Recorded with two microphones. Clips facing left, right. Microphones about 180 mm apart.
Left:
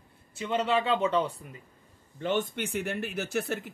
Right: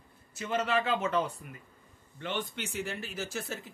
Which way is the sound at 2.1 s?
45° left (ahead or behind).